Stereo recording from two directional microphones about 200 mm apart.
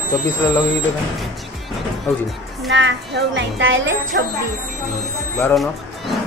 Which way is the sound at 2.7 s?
60° right (ahead or behind).